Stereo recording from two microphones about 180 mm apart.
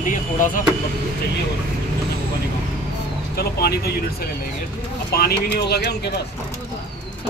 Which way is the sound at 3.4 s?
60° left (ahead or behind).